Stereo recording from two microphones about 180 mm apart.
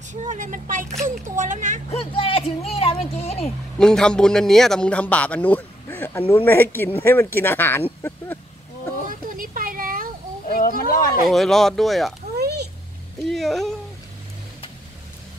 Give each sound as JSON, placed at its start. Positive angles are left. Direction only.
{"t": 0.1, "sound": "speech", "side_deg": -45}
{"t": 1.9, "sound": "speech", "side_deg": 35}
{"t": 3.7, "sound": "a man's voice", "side_deg": 5}
{"t": 9.1, "sound": "a sound", "side_deg": -50}
{"t": 10.8, "sound": "speech", "side_deg": 50}
{"t": 11.2, "sound": "speech", "side_deg": 0}
{"t": 12.4, "sound": "a sound", "side_deg": -65}
{"t": 13.3, "sound": "speech", "side_deg": 0}